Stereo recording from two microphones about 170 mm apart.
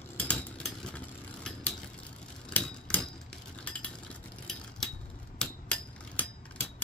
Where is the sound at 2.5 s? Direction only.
5° left (ahead or behind).